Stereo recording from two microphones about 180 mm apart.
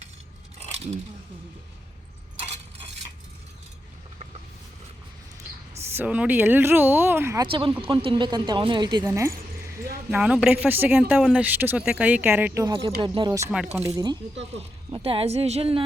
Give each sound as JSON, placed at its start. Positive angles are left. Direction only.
{"t": 5.9, "sound": "speech", "side_deg": -10}
{"t": 7.4, "sound": "speech", "side_deg": -30}
{"t": 10.1, "sound": "speech", "side_deg": -5}
{"t": 14.9, "sound": "a woman's voice", "side_deg": -30}